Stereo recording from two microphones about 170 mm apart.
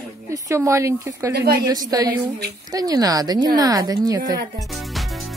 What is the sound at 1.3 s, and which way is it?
Speech, 70° right (ahead or behind).